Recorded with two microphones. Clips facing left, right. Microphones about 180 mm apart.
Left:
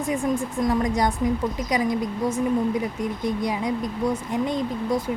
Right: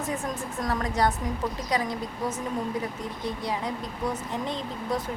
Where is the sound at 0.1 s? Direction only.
15° left (ahead or behind).